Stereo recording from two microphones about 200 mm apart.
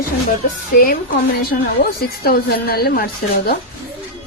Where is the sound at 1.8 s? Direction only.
50° left (ahead or behind).